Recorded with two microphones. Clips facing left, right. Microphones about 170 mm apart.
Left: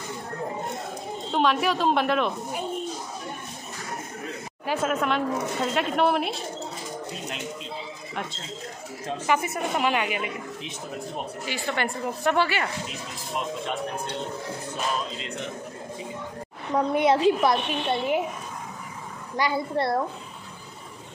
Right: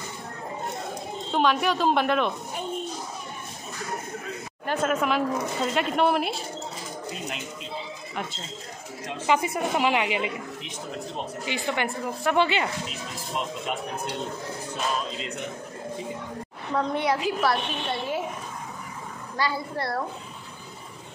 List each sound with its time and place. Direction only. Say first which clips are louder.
1.3 s a woman's voice: even; centre (ahead or behind)
4.6 s a woman's voice: even; centre (ahead or behind)
9.2 s speech: right 2 dB; 15° right (ahead or behind)
11.4 s speech: right 1 dB; 15° right (ahead or behind)
16.7 s a woman's voice: left 4 dB; 20° left (ahead or behind)
19.3 s a woman's voice: left 3 dB; 20° left (ahead or behind)